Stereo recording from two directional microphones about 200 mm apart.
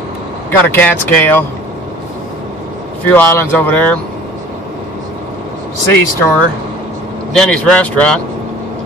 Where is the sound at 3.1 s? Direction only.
10° left (ahead or behind).